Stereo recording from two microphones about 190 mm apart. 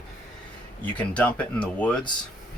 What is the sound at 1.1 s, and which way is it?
Speech, 5° left (ahead or behind).